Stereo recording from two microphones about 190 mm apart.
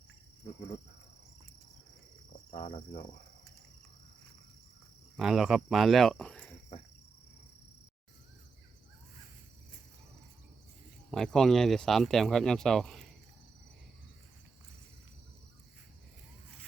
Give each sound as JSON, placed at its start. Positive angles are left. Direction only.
{"t": 2.6, "sound": "insect", "side_deg": 25}
{"t": 5.1, "sound": "speech", "side_deg": 0}
{"t": 11.1, "sound": "speech", "side_deg": 5}